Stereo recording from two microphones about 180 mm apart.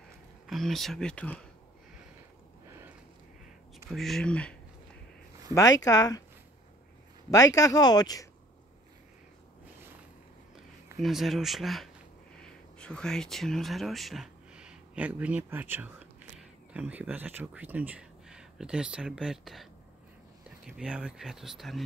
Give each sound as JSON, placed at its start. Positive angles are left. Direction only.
{"t": 0.5, "sound": "speech", "side_deg": 0}
{"t": 3.9, "sound": "speech", "side_deg": 0}
{"t": 5.5, "sound": "speech", "side_deg": 20}
{"t": 7.2, "sound": "speech", "side_deg": 20}
{"t": 10.5, "sound": "speech", "side_deg": 0}